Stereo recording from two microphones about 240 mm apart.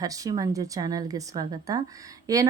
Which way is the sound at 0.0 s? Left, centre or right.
Centre.